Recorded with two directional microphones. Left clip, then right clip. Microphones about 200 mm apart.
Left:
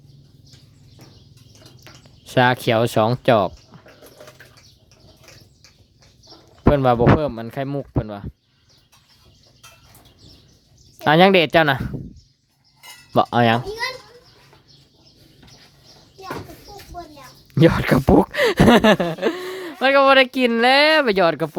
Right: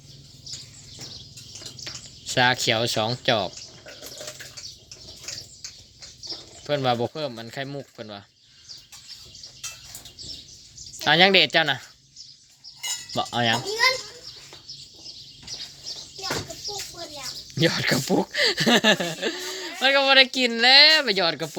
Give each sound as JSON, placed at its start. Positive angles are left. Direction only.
{"t": 2.2, "sound": "speech", "side_deg": 30}
{"t": 6.7, "sound": "speech", "side_deg": 30}
{"t": 10.9, "sound": "speech", "side_deg": 30}
{"t": 13.1, "sound": "speech", "side_deg": 35}
{"t": 17.5, "sound": "speech", "side_deg": 35}